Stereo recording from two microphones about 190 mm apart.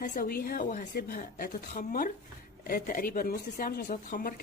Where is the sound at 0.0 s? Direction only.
45° left (ahead or behind).